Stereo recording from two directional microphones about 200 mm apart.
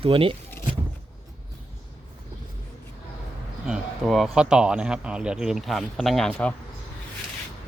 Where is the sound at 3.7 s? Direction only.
Centre (ahead or behind).